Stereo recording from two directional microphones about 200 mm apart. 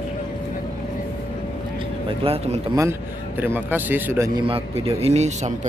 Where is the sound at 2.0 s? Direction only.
30° right (ahead or behind).